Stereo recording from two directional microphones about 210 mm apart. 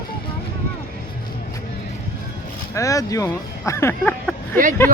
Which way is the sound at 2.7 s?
15° left (ahead or behind).